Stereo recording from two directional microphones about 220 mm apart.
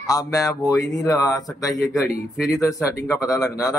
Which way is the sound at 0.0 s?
15° left (ahead or behind).